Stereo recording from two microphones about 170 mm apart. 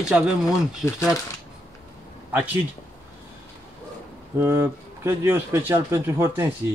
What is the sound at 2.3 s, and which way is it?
Speech, 10° right (ahead or behind).